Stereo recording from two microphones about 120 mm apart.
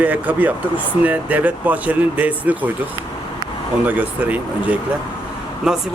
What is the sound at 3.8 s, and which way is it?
Speech, 15° right (ahead or behind).